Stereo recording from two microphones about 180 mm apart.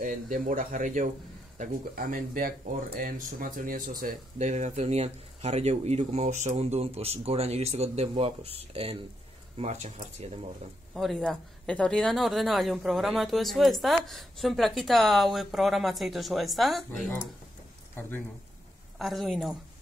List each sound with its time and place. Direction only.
0.0 s speech: 50° right (ahead or behind)
9.6 s speech: 40° right (ahead or behind)
11.0 s speech: centre (ahead or behind)
18.9 s speech: centre (ahead or behind)